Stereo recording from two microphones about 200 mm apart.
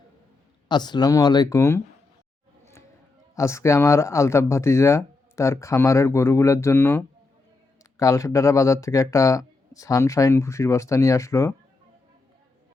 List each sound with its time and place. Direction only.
0.7 s speech: 20° left (ahead or behind)
3.3 s speech: 15° left (ahead or behind)